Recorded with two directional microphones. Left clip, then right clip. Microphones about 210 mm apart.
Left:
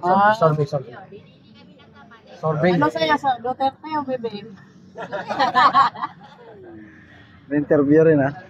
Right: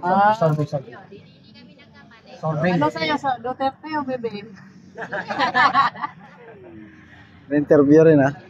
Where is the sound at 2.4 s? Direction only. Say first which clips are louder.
Left 3 dB; 50° left (ahead or behind).